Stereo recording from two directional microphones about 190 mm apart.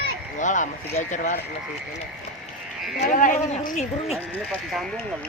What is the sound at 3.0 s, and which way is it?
Speech, 45° left (ahead or behind).